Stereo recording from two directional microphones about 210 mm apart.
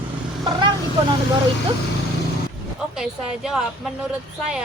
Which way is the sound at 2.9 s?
Centre (ahead or behind).